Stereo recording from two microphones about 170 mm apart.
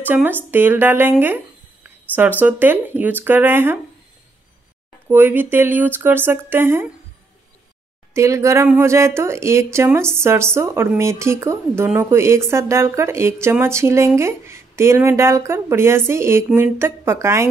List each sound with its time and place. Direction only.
0.1 s speech: 10° right (ahead or behind)
5.1 s speech: 10° right (ahead or behind)
8.1 s speech: 15° right (ahead or behind)